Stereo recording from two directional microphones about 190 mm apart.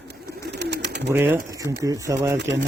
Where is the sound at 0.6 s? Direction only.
65° right (ahead or behind).